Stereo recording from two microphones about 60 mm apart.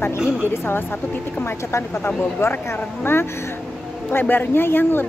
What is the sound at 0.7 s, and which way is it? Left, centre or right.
A woman's voice, left.